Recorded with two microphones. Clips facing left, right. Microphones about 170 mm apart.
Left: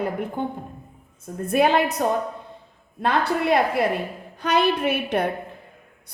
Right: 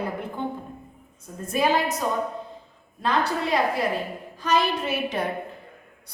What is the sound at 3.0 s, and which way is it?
A woman's voice, 60° left (ahead or behind).